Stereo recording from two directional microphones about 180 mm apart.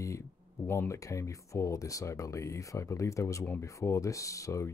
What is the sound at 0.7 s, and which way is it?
Speech, 15° left (ahead or behind).